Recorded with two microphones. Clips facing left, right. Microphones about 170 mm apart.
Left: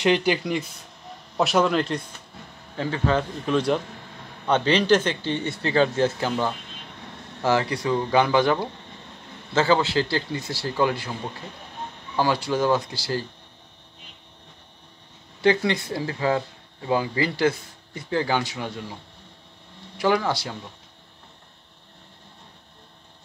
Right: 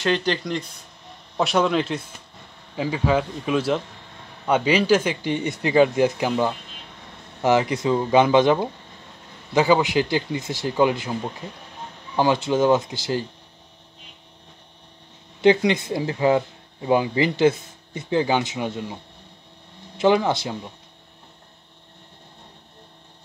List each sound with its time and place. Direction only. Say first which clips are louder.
0.0 s a man's voice: left 2 dB; 10° left (ahead or behind); by 11.1 s 20° right (ahead or behind)
12.2 s speech: right 3 dB; 20° right (ahead or behind)
15.4 s speech: right 4 dB; 20° right (ahead or behind)
20.0 s speech: right 4 dB; 20° right (ahead or behind)